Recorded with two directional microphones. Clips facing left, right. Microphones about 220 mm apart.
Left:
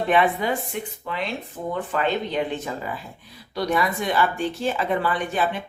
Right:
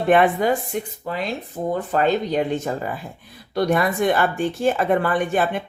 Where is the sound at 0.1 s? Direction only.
50° right (ahead or behind).